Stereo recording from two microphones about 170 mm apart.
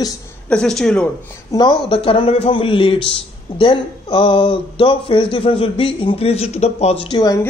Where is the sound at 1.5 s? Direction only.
25° left (ahead or behind).